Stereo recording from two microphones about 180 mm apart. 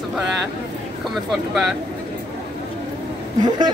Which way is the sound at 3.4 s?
25° right (ahead or behind).